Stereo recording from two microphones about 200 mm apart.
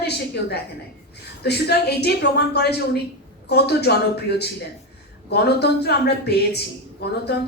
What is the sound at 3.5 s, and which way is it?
A woman's voice, 55° left (ahead or behind).